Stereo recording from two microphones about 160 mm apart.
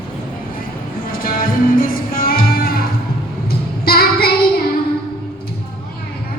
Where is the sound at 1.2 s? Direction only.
65° left (ahead or behind).